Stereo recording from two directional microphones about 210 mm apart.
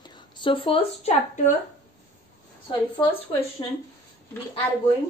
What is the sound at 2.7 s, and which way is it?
Speech, 25° left (ahead or behind).